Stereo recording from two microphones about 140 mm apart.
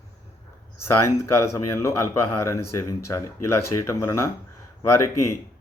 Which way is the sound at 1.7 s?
20° left (ahead or behind).